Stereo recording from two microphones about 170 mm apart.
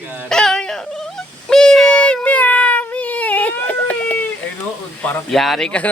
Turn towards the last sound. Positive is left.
turn(degrees=5)  # may be behind; listen again after turning